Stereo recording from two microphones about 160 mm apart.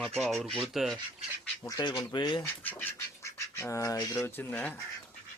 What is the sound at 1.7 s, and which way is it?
Speech, 25° left (ahead or behind).